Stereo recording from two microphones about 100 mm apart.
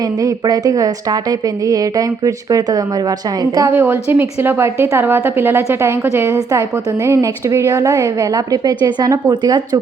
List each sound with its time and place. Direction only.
0.2 s a woman's voice: 35° right (ahead or behind)
3.7 s a woman's voice: 20° right (ahead or behind); by 9.8 s 45° right (ahead or behind)